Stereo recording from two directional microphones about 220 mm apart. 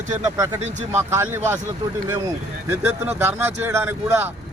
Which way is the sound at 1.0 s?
10° right (ahead or behind).